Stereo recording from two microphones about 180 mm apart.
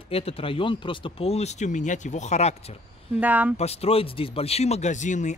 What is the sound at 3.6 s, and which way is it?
Speech, 35° left (ahead or behind).